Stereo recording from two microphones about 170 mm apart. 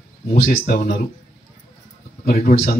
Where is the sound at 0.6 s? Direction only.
60° left (ahead or behind).